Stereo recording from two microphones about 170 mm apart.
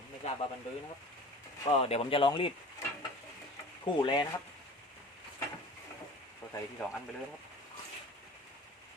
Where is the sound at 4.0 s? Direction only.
25° left (ahead or behind).